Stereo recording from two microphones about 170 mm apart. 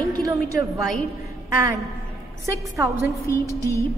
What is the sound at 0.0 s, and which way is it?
Speech, 20° right (ahead or behind).